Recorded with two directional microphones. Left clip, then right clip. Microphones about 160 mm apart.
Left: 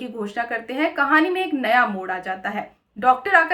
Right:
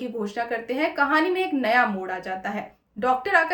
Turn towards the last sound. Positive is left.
turn(degrees=20)  # may be behind; listen again after turning